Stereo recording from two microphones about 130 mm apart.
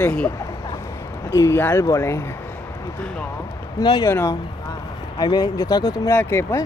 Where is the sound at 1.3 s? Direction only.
20° left (ahead or behind).